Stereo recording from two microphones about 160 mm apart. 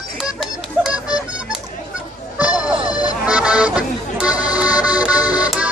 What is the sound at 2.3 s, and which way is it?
Music, 10° right (ahead or behind).